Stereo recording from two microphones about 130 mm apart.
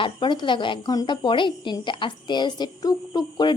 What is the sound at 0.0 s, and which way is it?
A woman's voice, 35° left (ahead or behind).